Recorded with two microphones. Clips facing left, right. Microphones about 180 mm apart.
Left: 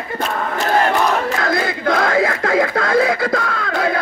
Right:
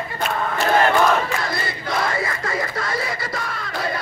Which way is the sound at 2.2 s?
60° left (ahead or behind).